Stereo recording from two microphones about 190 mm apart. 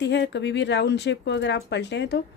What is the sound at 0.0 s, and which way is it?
Speech, 65° left (ahead or behind).